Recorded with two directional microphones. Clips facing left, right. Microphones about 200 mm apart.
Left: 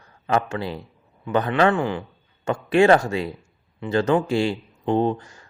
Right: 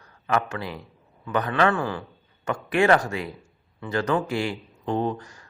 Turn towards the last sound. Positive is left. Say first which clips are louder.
# left 5 dB
turn(degrees=25)  # may be behind; listen again after turning